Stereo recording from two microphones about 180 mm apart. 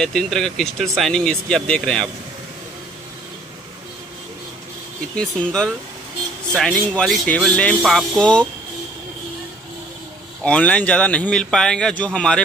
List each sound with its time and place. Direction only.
0.0 s speech: 5° left (ahead or behind)
5.1 s speech: 5° left (ahead or behind)
10.4 s a man's voice: 5° left (ahead or behind)